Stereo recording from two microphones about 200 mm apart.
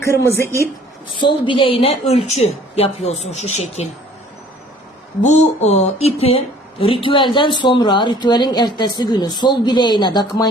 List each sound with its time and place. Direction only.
0.0 s a woman's voice: 15° left (ahead or behind)
1.1 s a woman's voice: 25° left (ahead or behind)
5.2 s speech: 35° left (ahead or behind)